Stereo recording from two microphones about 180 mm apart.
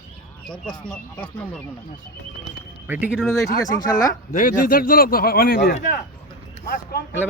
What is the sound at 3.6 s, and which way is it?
Speech, 20° left (ahead or behind).